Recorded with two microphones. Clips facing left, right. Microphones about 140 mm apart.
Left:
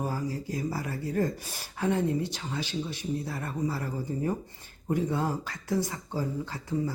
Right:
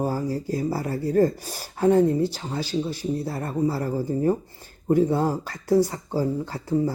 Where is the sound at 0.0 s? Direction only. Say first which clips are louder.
Right 6 dB; 35° right (ahead or behind).